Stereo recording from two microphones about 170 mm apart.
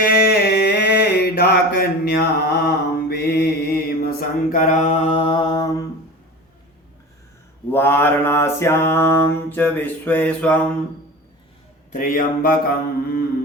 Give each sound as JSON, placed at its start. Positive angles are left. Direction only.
{"t": 0.0, "sound": "mantra", "side_deg": 60}
{"t": 7.7, "sound": "mantra", "side_deg": 15}
{"t": 11.9, "sound": "a man's voice", "side_deg": 50}